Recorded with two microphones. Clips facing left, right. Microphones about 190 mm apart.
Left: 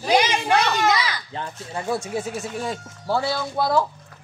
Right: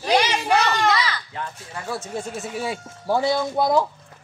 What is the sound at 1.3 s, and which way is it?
Speech, 30° left (ahead or behind).